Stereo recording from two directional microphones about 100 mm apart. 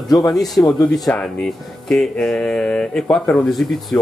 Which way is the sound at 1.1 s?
15° left (ahead or behind).